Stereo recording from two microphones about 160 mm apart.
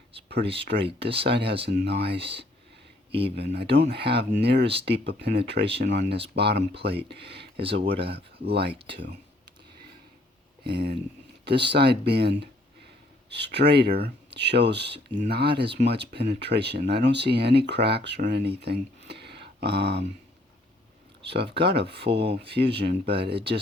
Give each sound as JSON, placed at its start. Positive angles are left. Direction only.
{"t": 0.6, "sound": "speech", "side_deg": -90}
{"t": 10.6, "sound": "speech", "side_deg": -80}
{"t": 21.2, "sound": "speech", "side_deg": -90}